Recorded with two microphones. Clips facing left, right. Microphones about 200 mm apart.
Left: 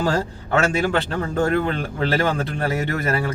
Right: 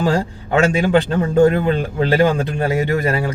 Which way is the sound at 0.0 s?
15° right (ahead or behind).